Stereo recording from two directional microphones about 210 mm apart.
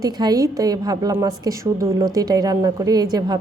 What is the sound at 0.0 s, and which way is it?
A woman's voice, 15° right (ahead or behind).